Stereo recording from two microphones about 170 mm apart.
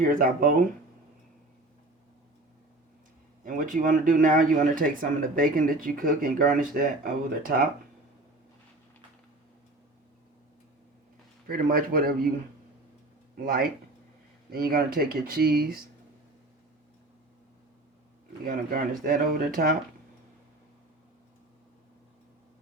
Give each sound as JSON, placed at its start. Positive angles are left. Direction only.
{"t": 0.0, "sound": "speech", "side_deg": -55}
{"t": 3.4, "sound": "speech", "side_deg": -50}
{"t": 11.4, "sound": "speech", "side_deg": -60}
{"t": 13.3, "sound": "speech", "side_deg": -60}
{"t": 18.4, "sound": "speech", "side_deg": -55}